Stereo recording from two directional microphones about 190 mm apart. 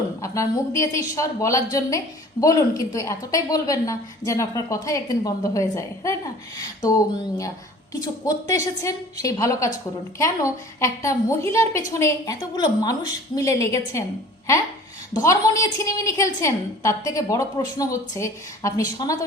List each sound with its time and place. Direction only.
0.2 s a woman's voice: 15° left (ahead or behind)
15.1 s a woman's voice: 15° left (ahead or behind)